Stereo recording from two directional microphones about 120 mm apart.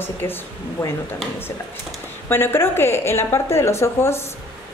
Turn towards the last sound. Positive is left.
turn(degrees=20)  # may be behind; listen again after turning